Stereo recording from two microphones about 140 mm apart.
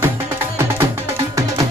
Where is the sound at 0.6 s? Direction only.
20° right (ahead or behind).